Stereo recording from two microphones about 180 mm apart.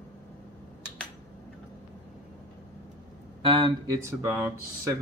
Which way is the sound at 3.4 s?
25° right (ahead or behind).